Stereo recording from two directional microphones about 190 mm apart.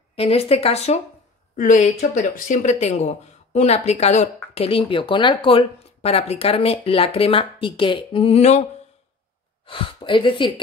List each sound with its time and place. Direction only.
0.1 s speech: 30° left (ahead or behind)
9.7 s speech: 25° left (ahead or behind)